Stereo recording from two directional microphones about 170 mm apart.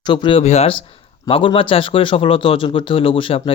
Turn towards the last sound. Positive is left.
turn(degrees=30)  # may be behind; listen again after turning